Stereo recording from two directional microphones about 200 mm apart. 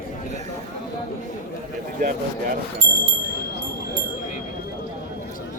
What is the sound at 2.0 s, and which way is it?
Speech, 45° right (ahead or behind).